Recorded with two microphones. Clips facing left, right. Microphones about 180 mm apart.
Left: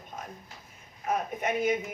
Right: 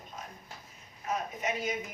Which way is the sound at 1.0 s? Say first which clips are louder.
Left 4 dB; 55° left (ahead or behind).